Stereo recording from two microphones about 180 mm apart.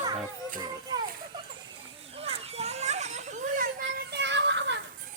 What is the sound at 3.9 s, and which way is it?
Children playing, 80° right.